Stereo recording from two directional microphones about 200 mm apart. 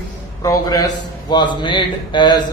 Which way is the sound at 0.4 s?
20° left (ahead or behind).